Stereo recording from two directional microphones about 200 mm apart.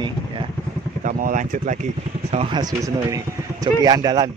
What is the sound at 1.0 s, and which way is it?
Speech, 40° right (ahead or behind).